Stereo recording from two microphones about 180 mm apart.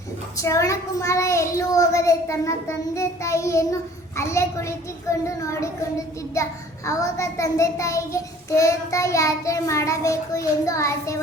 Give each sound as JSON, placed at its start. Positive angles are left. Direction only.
{"t": 0.3, "sound": "a child's voice", "side_deg": 20}